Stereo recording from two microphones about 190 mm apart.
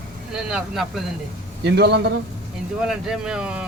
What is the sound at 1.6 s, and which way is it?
Speech, 60° right (ahead or behind).